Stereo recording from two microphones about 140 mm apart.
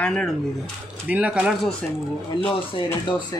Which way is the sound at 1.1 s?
10° right (ahead or behind).